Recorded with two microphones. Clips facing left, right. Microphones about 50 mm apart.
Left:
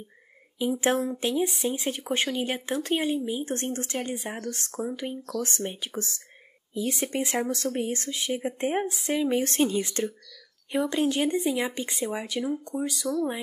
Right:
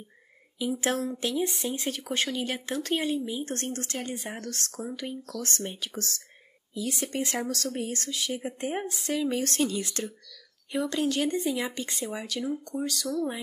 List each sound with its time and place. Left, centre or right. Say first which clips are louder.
0.6 s speech: left 3 dB; left